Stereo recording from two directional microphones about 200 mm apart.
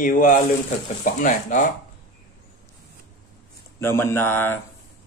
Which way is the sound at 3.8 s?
10° left (ahead or behind).